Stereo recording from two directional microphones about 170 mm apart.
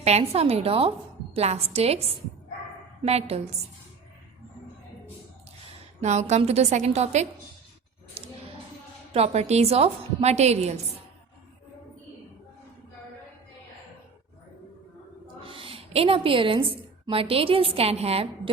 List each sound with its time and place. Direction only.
0.0 s a woman's voice: 40° right (ahead or behind)
6.0 s a woman's voice: 40° right (ahead or behind)
8.2 s a sound: 35° right (ahead or behind)
9.1 s a woman's voice: 35° right (ahead or behind)
15.4 s a woman's voice: 30° right (ahead or behind)